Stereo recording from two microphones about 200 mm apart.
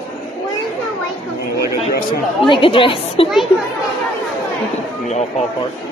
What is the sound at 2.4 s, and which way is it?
Speech, 25° left (ahead or behind).